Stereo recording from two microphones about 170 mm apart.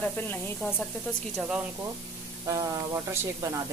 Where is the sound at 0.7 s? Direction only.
5° right (ahead or behind).